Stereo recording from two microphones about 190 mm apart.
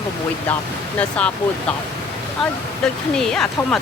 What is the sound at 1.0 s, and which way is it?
Speech, 5° left (ahead or behind).